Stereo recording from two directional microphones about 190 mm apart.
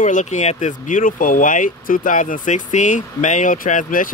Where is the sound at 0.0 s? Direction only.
40° left (ahead or behind).